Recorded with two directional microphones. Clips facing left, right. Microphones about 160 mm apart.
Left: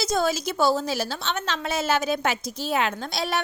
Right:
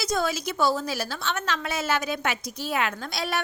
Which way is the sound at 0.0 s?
25° left (ahead or behind).